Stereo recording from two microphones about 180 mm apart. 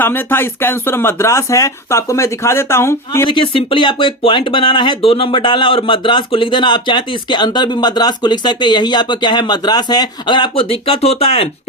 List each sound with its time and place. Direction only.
0.0 s speech: 10° left (ahead or behind)
3.2 s speech: 30° left (ahead or behind)